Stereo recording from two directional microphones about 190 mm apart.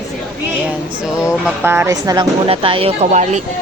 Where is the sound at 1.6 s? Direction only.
10° right (ahead or behind); by 3.4 s 35° right (ahead or behind).